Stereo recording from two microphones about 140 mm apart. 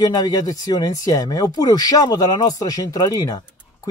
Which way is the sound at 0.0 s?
25° left (ahead or behind).